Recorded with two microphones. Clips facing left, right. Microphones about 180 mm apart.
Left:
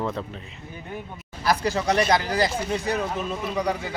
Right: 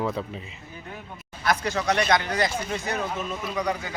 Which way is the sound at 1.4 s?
35° left (ahead or behind).